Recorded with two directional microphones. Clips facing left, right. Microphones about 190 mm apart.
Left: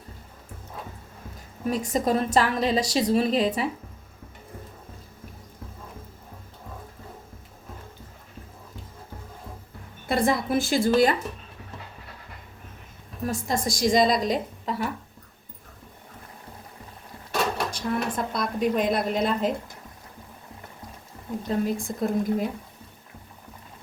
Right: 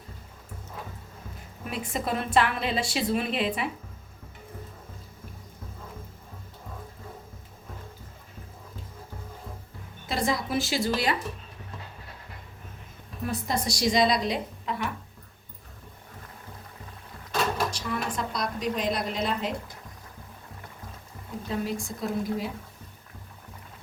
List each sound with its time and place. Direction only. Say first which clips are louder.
1.6 s a woman's voice: left 7 dB; 40° left (ahead or behind)
10.1 s a woman's voice: left 5 dB; 55° left (ahead or behind)
13.2 s a woman's voice: left 2 dB; 45° left (ahead or behind)
17.7 s a woman's voice: left 4 dB; 55° left (ahead or behind)
21.5 s a woman's voice: left 4 dB; 50° left (ahead or behind)